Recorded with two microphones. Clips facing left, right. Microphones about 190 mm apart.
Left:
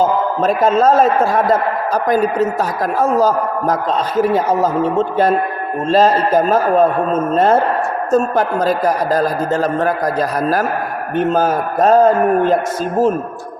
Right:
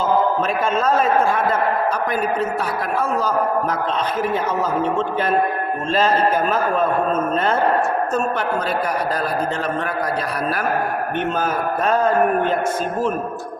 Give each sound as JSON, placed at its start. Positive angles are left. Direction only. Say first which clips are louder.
{"t": 0.0, "sound": "a man's voice", "louder": "left 3 dB", "side_deg": 40}